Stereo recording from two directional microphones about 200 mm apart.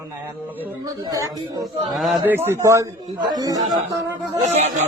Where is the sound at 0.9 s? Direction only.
20° right (ahead or behind).